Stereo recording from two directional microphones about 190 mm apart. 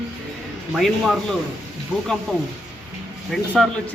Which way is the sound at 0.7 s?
Centre (ahead or behind).